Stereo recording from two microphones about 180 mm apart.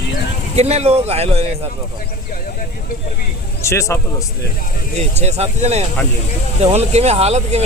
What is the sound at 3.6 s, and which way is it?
Speech, 15° left (ahead or behind).